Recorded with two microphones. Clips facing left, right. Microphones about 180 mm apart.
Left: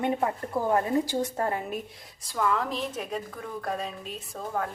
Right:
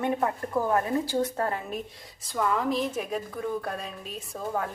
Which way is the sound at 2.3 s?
5° right (ahead or behind).